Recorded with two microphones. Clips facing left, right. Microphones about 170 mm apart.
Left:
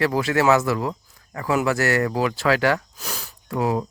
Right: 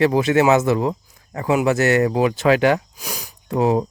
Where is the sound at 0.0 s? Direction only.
20° right (ahead or behind).